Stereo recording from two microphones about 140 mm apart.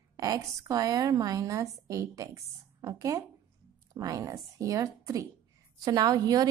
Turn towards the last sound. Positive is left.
turn(degrees=-25)  # may be behind; listen again after turning